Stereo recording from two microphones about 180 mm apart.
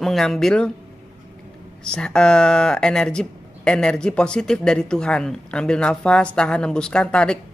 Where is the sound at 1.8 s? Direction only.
5° left (ahead or behind).